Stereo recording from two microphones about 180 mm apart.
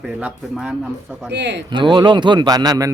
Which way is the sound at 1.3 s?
70° right (ahead or behind).